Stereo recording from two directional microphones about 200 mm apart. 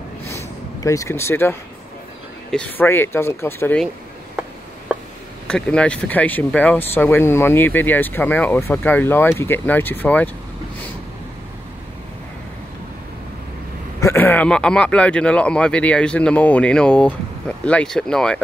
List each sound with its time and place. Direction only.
0.3 s a sound: 15° left (ahead or behind)
2.5 s speech: 10° left (ahead or behind)
5.5 s speech: 5° left (ahead or behind)
14.0 s speech: 10° left (ahead or behind)